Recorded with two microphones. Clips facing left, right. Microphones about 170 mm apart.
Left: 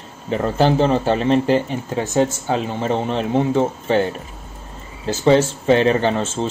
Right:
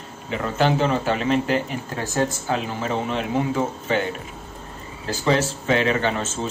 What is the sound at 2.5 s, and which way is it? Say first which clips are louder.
Speech: left 4 dB; 30° left (ahead or behind).